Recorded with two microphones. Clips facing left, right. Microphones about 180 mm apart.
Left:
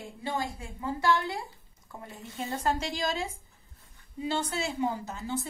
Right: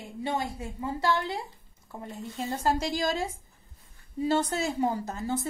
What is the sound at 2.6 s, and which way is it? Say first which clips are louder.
A woman's voice: right 3 dB; 35° right (ahead or behind).